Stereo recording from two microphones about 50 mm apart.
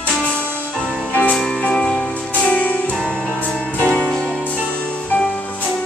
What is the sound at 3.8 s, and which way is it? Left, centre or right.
Music, left.